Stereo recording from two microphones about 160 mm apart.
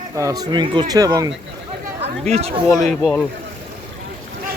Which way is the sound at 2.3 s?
40° right (ahead or behind).